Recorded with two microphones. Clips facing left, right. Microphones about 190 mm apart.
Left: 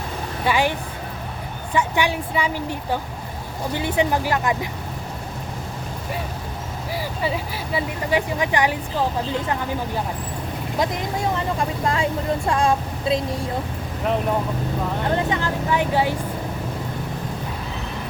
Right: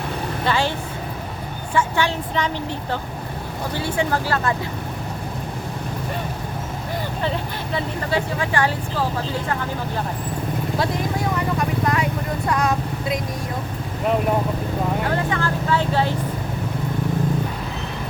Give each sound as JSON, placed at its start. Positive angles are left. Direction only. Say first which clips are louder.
{"t": 0.4, "sound": "speech", "louder": "left 1 dB", "side_deg": 15}
{"t": 1.7, "sound": "speech", "louder": "even", "side_deg": 15}
{"t": 7.2, "sound": "speech", "louder": "even", "side_deg": 10}
{"t": 10.8, "sound": "speech", "louder": "left 1 dB", "side_deg": 20}
{"t": 15.1, "sound": "speech", "louder": "even", "side_deg": 20}